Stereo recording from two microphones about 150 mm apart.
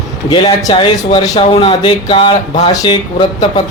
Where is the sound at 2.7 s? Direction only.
25° left (ahead or behind).